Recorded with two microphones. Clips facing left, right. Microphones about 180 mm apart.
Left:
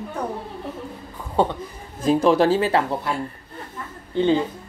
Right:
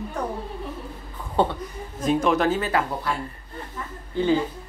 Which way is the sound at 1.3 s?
10° left (ahead or behind).